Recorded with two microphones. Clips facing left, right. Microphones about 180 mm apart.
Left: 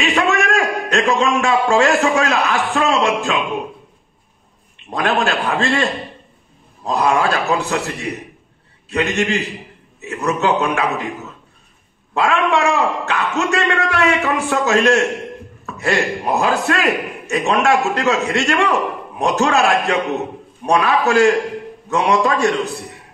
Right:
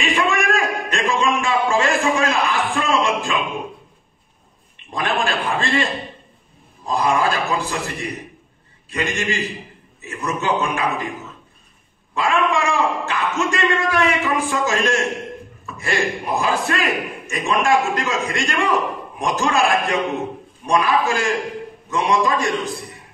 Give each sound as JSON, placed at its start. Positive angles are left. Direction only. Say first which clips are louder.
{"t": 0.0, "sound": "a sound", "louder": "left 3 dB", "side_deg": 70}
{"t": 4.8, "sound": "a man's voice", "louder": "left 4 dB", "side_deg": 70}
{"t": 12.1, "sound": "a man's voice", "louder": "left 3 dB", "side_deg": 70}